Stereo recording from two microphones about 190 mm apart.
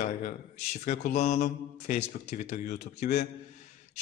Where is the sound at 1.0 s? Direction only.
35° left (ahead or behind).